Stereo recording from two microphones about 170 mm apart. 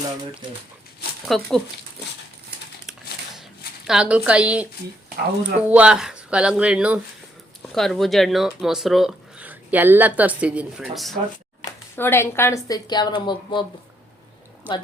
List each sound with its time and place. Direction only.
1.3 s speech: centre (ahead or behind)
3.8 s speech: 5° right (ahead or behind)
11.6 s a woman's voice: 15° left (ahead or behind)
14.6 s speech: 10° right (ahead or behind)